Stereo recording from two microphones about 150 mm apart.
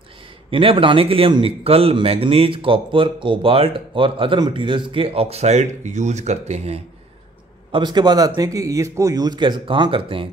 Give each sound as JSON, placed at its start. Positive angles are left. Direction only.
{"t": 0.5, "sound": "speech", "side_deg": -35}
{"t": 7.7, "sound": "speech", "side_deg": -30}